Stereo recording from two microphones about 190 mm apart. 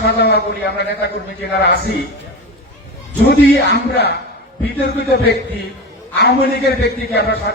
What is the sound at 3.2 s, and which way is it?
A man's voice, 60° left (ahead or behind).